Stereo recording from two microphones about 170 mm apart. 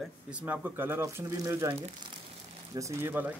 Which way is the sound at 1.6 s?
30° right (ahead or behind).